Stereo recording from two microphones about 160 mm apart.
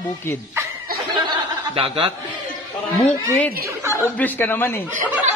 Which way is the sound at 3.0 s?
5° left (ahead or behind).